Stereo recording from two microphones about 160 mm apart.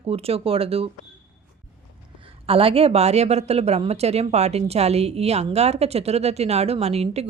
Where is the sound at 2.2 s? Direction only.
35° right (ahead or behind).